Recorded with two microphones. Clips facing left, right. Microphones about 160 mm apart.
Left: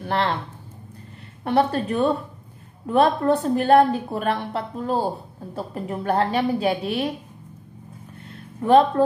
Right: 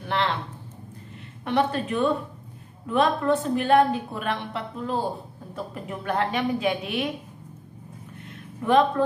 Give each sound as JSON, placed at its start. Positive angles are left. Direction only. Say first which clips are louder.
{"t": 0.1, "sound": "a woman's voice", "louder": "left 2 dB", "side_deg": 40}
{"t": 1.4, "sound": "a woman's voice", "louder": "left 3 dB", "side_deg": 40}
{"t": 8.6, "sound": "a woman's voice", "louder": "left 4 dB", "side_deg": 35}